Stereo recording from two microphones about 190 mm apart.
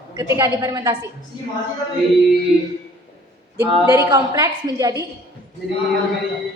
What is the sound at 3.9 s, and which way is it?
A woman's voice, 15° right (ahead or behind).